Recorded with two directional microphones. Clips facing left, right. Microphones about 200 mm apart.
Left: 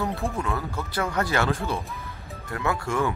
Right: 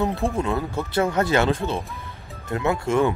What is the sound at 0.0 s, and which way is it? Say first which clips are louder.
Speech: right 5 dB; 25° right (ahead or behind).